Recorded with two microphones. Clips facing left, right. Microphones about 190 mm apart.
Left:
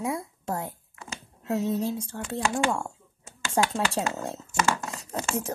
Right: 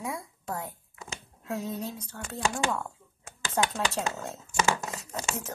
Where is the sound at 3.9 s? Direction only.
30° left (ahead or behind).